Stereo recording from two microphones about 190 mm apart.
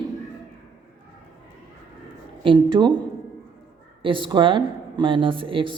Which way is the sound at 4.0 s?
25° right (ahead or behind).